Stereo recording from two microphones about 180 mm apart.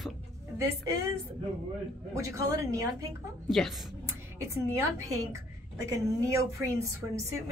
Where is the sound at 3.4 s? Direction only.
Centre (ahead or behind).